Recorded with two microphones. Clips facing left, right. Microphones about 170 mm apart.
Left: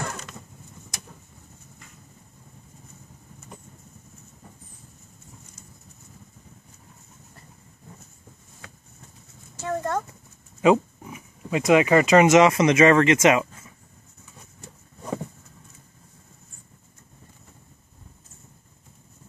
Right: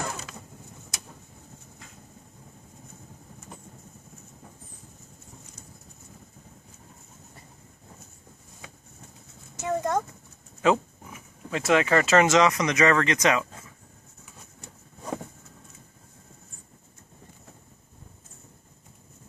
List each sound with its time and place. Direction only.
0.0 s a sound: 5° right (ahead or behind)
9.6 s speech: 15° right (ahead or behind)
10.6 s speech: 10° left (ahead or behind)